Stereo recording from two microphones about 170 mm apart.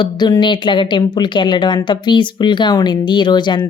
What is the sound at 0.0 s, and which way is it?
A woman's voice, 25° left (ahead or behind).